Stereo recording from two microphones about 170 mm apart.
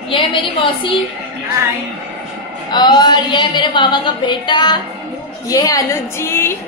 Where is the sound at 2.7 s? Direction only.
25° left (ahead or behind).